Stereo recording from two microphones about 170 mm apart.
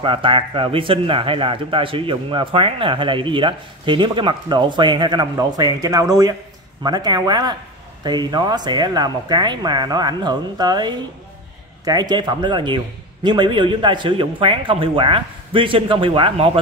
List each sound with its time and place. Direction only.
0.0 s speech: 30° right (ahead or behind)